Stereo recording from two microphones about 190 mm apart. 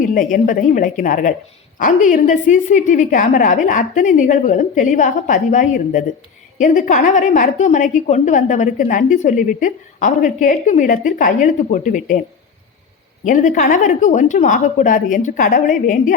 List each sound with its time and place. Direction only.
0.0 s a woman's voice: 45° left (ahead or behind)
13.2 s a woman's voice: 40° left (ahead or behind)